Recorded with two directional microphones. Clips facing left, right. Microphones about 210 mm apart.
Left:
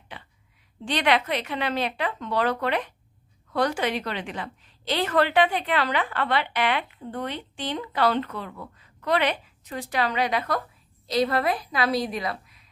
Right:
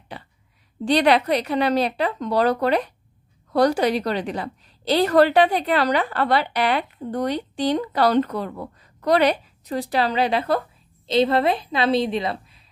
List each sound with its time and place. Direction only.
0.8 s a woman's voice: 35° right (ahead or behind)